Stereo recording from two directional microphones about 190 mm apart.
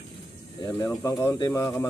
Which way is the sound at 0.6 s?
15° left (ahead or behind).